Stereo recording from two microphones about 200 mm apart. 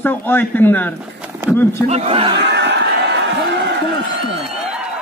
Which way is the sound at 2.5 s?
60° right (ahead or behind).